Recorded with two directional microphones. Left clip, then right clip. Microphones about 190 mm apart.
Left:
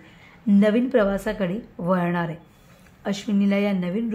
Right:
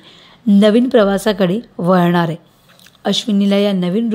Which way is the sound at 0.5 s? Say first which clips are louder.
Right 8 dB; 35° right (ahead or behind).